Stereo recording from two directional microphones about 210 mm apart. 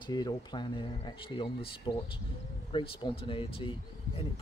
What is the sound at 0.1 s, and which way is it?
Speech, 20° left (ahead or behind).